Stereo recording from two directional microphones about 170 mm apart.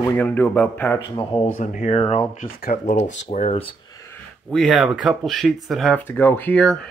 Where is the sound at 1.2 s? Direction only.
30° left (ahead or behind).